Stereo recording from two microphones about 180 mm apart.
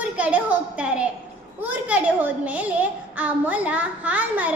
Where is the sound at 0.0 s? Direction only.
5° right (ahead or behind).